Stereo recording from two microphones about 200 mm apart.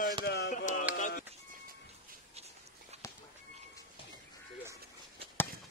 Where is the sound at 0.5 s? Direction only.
40° left (ahead or behind).